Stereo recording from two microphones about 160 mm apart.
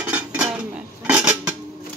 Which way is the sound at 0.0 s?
10° right (ahead or behind).